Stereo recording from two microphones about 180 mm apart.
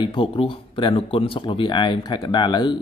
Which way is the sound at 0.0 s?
25° left (ahead or behind).